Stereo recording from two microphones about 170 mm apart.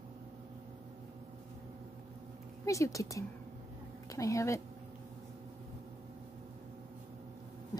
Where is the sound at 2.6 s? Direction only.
20° left (ahead or behind).